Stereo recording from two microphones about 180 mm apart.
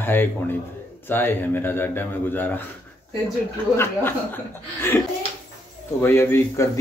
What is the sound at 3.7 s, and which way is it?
A man's voice, 10° left (ahead or behind).